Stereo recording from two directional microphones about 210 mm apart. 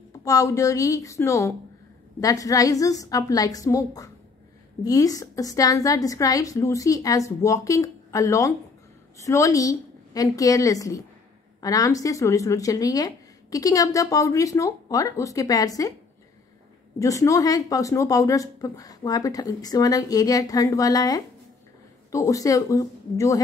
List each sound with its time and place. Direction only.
0.2 s speech: 15° left (ahead or behind)
17.0 s speech: 15° left (ahead or behind)